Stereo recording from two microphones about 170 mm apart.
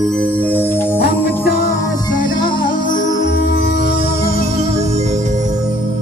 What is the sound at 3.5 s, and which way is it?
Music, 70° left (ahead or behind).